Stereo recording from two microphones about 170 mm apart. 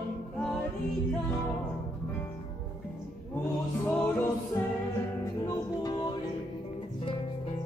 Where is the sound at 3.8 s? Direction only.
15° left (ahead or behind).